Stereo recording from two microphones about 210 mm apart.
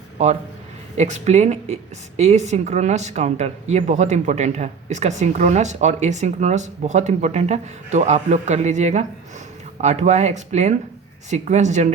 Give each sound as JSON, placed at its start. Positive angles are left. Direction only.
{"t": 0.2, "sound": "a woman's voice", "side_deg": -30}